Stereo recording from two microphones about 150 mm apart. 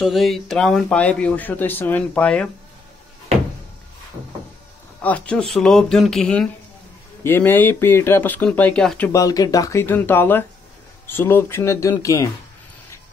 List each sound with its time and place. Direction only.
0.0 s speech: centre (ahead or behind)
5.0 s speech: 10° left (ahead or behind)
9.1 s speech: 25° left (ahead or behind)